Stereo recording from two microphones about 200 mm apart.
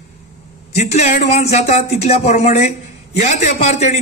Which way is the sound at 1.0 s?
35° left (ahead or behind).